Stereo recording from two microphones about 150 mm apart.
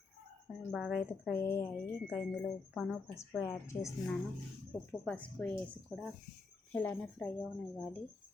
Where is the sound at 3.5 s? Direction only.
20° left (ahead or behind).